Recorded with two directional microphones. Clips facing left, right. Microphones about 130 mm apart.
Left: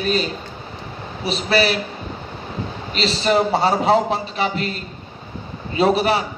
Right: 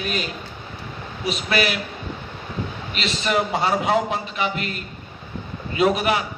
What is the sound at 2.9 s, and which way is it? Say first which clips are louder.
A man's voice: left 6 dB; 35° left (ahead or behind).